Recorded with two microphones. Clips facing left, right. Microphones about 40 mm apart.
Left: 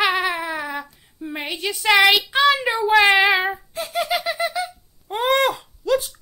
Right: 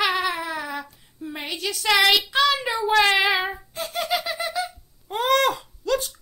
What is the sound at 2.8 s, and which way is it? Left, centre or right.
Cat, centre.